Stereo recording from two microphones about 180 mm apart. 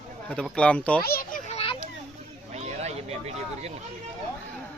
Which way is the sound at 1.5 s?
35° left (ahead or behind).